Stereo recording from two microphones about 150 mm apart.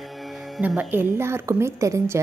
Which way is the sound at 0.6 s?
10° right (ahead or behind).